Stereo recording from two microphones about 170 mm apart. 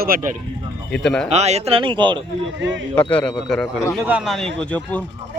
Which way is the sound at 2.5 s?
90° right.